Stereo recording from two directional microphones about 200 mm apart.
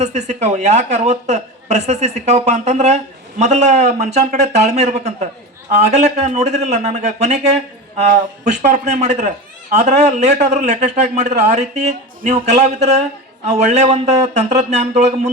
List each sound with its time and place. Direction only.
0.0 s a woman's voice: 35° right (ahead or behind)
8.6 s a woman's voice: 35° right (ahead or behind)